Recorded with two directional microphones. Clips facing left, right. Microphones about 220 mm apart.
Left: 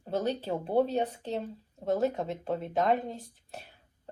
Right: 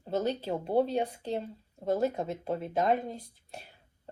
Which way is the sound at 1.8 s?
5° right (ahead or behind).